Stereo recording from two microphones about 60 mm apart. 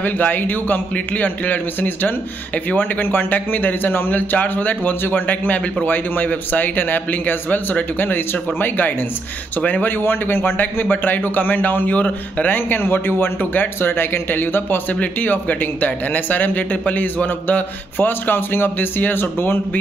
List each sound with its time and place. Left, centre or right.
0.0 s a man's voice: left